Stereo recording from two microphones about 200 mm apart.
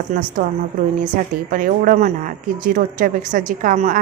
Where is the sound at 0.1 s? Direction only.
40° right (ahead or behind).